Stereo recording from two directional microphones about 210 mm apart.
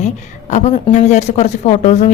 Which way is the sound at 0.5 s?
35° left (ahead or behind).